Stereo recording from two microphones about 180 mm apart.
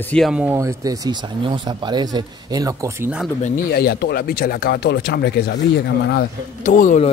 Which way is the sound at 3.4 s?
50° left (ahead or behind).